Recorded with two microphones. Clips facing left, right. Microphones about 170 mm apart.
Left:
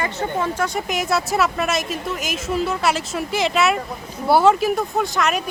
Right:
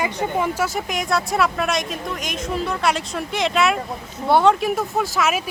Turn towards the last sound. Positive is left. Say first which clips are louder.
# even
turn(degrees=-5)  # may be behind; listen again after turning